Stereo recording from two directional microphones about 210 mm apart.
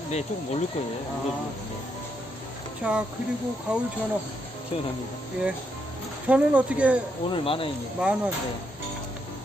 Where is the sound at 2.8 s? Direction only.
5° right (ahead or behind).